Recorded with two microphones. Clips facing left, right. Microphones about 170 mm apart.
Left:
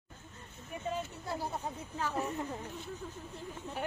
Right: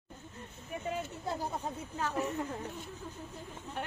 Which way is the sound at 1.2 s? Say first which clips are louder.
Right 2 dB; 15° right (ahead or behind).